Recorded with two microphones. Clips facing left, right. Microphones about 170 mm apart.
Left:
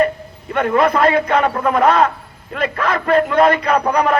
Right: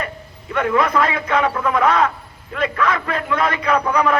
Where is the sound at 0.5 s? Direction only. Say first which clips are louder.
Left 3 dB; 50° left (ahead or behind).